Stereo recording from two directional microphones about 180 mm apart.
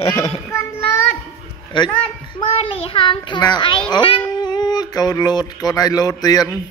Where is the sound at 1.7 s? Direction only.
25° left (ahead or behind).